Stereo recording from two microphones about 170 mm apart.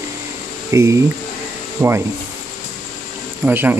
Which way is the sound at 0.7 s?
15° right (ahead or behind).